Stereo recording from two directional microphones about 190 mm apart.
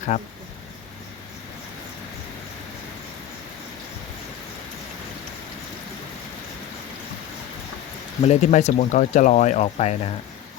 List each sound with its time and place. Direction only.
0.1 s speech: 40° left (ahead or behind)
8.2 s speech: 35° left (ahead or behind)